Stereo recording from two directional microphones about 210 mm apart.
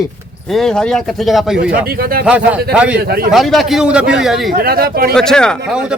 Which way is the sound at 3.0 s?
50° right (ahead or behind).